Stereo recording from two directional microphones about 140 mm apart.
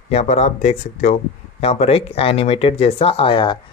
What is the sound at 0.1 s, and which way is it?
Speech, 50° left (ahead or behind).